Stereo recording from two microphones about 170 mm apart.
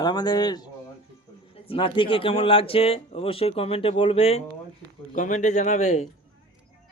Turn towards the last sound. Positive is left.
turn(degrees=40)  # may be behind; listen again after turning